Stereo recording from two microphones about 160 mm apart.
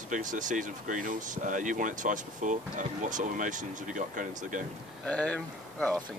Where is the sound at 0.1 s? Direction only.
55° right (ahead or behind).